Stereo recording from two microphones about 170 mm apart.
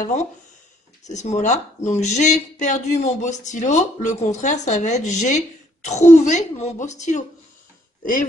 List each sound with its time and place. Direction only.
1.0 s speech: 45° left (ahead or behind)